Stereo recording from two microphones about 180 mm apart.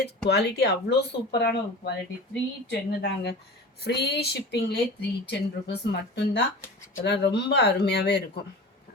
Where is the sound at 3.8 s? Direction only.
65° left (ahead or behind).